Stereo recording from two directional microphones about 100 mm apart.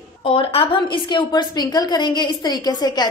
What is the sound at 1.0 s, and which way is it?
A woman's voice, 45° left (ahead or behind).